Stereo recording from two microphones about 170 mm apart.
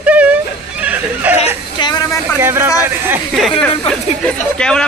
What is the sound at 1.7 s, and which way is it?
Speech, 25° left (ahead or behind).